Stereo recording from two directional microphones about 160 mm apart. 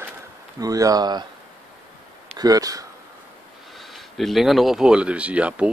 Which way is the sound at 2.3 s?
20° right (ahead or behind).